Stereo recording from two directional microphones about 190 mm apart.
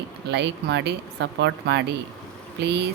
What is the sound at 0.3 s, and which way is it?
Speech, 65° right (ahead or behind).